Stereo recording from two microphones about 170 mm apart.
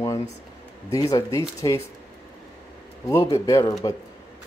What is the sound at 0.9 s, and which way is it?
Speech, 20° left (ahead or behind).